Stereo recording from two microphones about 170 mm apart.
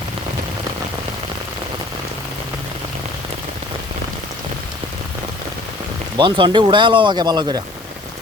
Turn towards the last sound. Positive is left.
turn(degrees=-25)  # may be behind; listen again after turning